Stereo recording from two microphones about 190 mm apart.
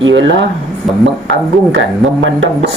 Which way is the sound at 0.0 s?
75° right (ahead or behind).